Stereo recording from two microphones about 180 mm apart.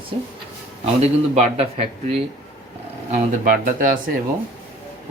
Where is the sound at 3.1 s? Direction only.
50° right (ahead or behind).